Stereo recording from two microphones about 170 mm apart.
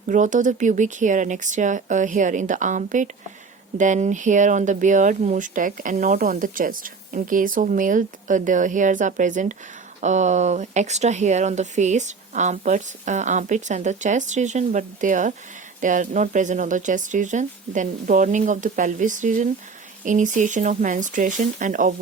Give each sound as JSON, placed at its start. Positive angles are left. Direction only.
{"t": 0.1, "sound": "speech", "side_deg": -45}